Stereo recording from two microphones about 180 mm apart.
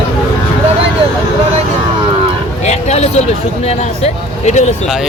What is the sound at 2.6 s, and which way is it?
Speech, 40° left (ahead or behind).